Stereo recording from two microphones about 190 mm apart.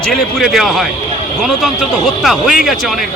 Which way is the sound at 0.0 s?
Centre (ahead or behind).